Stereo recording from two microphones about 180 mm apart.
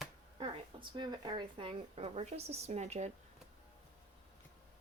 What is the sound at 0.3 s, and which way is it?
Speech, 30° right (ahead or behind).